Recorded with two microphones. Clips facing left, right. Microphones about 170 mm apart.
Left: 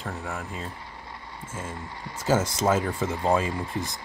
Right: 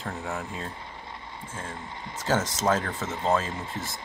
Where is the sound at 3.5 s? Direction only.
20° right (ahead or behind).